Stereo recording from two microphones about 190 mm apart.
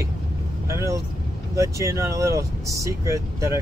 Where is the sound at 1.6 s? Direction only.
15° right (ahead or behind).